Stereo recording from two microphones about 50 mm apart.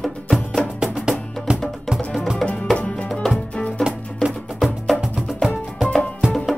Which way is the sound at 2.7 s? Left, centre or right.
Left.